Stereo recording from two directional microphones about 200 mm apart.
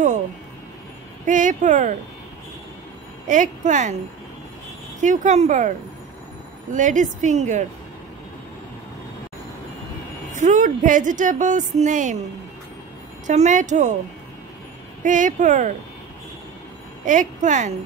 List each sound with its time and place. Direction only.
1.2 s a woman's voice: 40° right (ahead or behind)
3.3 s a woman's voice: 40° right (ahead or behind)
5.0 s a woman's voice: 35° right (ahead or behind)
10.3 s a woman's voice: 40° right (ahead or behind)
13.3 s a woman's voice: 35° right (ahead or behind)
15.0 s a woman's voice: 40° right (ahead or behind)
17.0 s a woman's voice: 40° right (ahead or behind)